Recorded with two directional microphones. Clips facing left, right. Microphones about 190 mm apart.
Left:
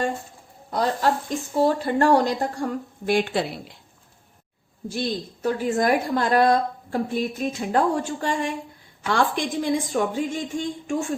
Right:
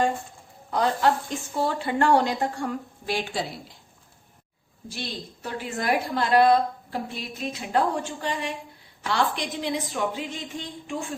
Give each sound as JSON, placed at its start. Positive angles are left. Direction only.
{"t": 0.7, "sound": "speech", "side_deg": 40}
{"t": 3.1, "sound": "speech", "side_deg": 55}
{"t": 4.9, "sound": "a woman's voice", "side_deg": 45}